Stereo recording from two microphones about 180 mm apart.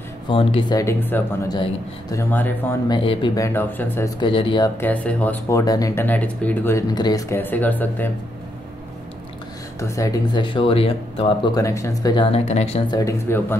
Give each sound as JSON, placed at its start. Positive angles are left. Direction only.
{"t": 0.3, "sound": "speech", "side_deg": 30}
{"t": 2.3, "sound": "speech", "side_deg": 10}
{"t": 2.9, "sound": "speech", "side_deg": 30}
{"t": 3.4, "sound": "speech", "side_deg": 10}
{"t": 4.2, "sound": "speech", "side_deg": 30}
{"t": 4.7, "sound": "speech", "side_deg": 10}
{"t": 6.9, "sound": "speech", "side_deg": 20}
{"t": 9.8, "sound": "speech", "side_deg": 15}
{"t": 12.9, "sound": "speech", "side_deg": 15}